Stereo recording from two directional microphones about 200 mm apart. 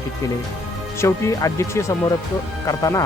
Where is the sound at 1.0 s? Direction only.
15° left (ahead or behind).